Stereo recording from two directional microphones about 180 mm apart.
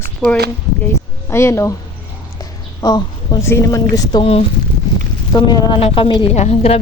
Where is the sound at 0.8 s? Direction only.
15° left (ahead or behind).